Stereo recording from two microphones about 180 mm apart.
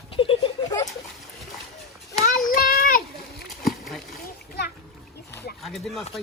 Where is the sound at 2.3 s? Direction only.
55° left (ahead or behind).